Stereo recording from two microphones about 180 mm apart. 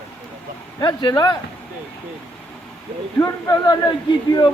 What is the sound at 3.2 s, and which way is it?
Speech, 25° left (ahead or behind).